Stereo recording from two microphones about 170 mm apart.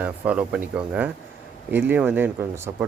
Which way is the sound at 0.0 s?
5° right (ahead or behind).